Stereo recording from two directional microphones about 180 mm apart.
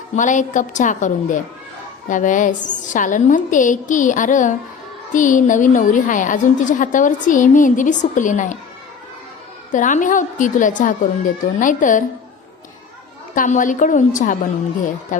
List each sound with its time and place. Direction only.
0.2 s a woman's voice: 45° left (ahead or behind)
9.7 s a woman's voice: 45° left (ahead or behind)
13.3 s a woman's voice: 45° left (ahead or behind)